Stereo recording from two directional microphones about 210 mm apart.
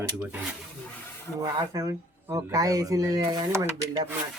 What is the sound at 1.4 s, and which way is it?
Speech, 20° right (ahead or behind).